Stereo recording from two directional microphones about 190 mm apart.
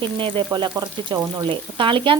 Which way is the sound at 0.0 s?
25° right (ahead or behind).